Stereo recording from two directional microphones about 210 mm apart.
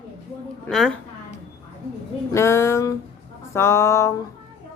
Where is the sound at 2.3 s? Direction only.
15° left (ahead or behind).